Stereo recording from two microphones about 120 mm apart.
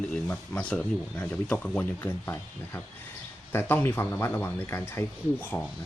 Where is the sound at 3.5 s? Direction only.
15° left (ahead or behind).